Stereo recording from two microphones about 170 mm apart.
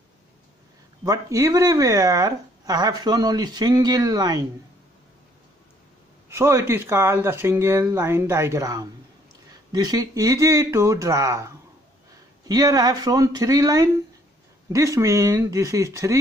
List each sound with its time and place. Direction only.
1.0 s speech: 20° right (ahead or behind)
6.2 s speech: 15° right (ahead or behind)